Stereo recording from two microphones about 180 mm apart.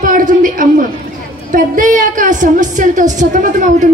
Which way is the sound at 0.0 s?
45° right (ahead or behind).